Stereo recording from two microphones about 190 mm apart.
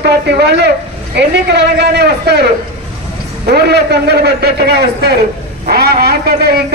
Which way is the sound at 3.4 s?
60° right (ahead or behind).